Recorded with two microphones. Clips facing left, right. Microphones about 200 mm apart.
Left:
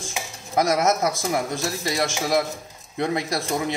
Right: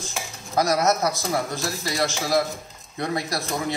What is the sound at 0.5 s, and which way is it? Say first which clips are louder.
A man's voice: left 1 dB; 25° left (ahead or behind).